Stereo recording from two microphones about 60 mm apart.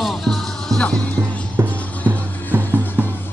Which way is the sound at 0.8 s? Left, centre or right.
Centre.